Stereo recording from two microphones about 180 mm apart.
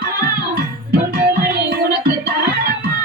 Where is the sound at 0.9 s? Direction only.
55° right (ahead or behind).